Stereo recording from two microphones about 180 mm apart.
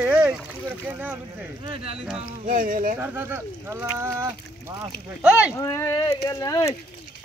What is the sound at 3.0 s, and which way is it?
Speech, 10° right (ahead or behind).